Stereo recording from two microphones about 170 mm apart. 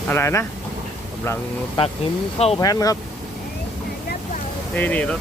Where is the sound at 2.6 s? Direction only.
20° left (ahead or behind).